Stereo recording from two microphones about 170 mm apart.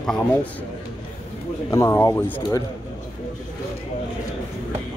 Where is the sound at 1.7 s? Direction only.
20° left (ahead or behind).